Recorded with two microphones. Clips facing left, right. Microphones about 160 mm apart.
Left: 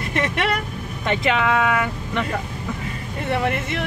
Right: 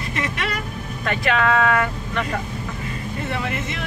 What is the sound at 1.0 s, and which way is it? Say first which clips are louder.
Speech: even; 20° left (ahead or behind).